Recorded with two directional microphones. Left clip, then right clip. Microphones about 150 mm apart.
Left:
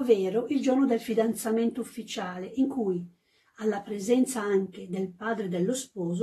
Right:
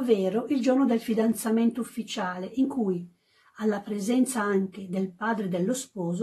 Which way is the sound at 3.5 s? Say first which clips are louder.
Right 1 dB; 30° right (ahead or behind).